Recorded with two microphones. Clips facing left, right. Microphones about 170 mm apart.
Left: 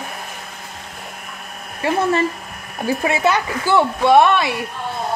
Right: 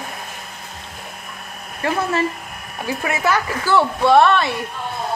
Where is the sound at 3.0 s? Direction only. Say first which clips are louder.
Left 1 dB; 25° left (ahead or behind).